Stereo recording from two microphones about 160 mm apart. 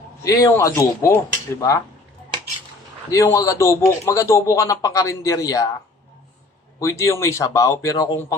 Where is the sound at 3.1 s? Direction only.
20° left (ahead or behind).